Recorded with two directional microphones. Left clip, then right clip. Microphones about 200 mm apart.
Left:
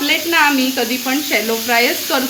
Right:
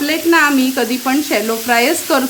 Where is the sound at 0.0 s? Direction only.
45° right (ahead or behind).